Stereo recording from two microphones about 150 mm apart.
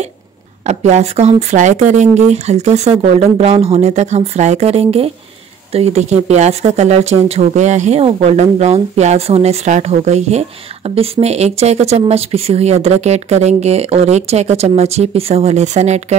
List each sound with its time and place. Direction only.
0.7 s speech: 50° right (ahead or behind)